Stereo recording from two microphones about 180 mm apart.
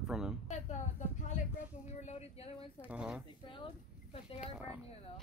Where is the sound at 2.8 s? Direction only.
5° right (ahead or behind).